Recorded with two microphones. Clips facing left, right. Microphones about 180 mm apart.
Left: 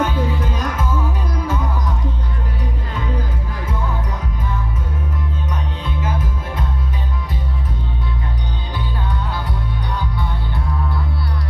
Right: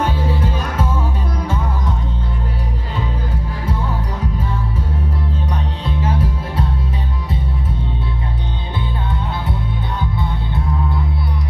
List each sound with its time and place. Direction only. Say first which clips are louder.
0.0 s music: even; 30° right (ahead or behind)
5.9 s music: right 5 dB; 30° right (ahead or behind)
10.1 s music: right 3 dB; 25° right (ahead or behind)